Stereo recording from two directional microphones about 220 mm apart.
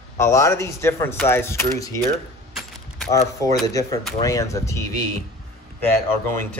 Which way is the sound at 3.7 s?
15° left (ahead or behind).